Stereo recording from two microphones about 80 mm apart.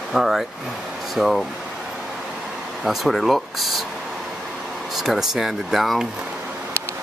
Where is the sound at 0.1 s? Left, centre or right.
Centre.